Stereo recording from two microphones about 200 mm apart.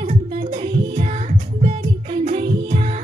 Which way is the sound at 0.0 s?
40° right (ahead or behind).